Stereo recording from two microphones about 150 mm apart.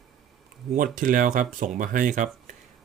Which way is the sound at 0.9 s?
65° right (ahead or behind).